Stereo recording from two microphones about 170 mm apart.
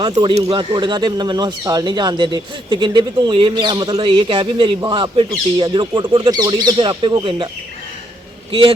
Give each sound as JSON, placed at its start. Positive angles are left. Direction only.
{"t": 0.0, "sound": "speech", "side_deg": -25}